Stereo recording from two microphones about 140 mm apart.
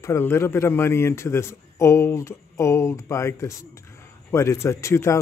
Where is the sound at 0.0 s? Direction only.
20° left (ahead or behind).